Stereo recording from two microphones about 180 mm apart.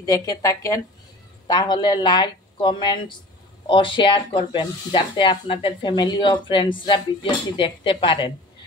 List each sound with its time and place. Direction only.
0.0 s speech: 20° left (ahead or behind)